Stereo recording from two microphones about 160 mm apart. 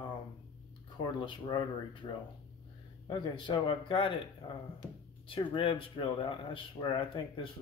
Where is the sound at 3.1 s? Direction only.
30° left (ahead or behind).